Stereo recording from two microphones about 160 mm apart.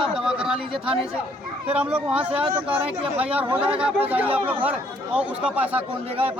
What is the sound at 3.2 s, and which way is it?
Speech, 10° right (ahead or behind).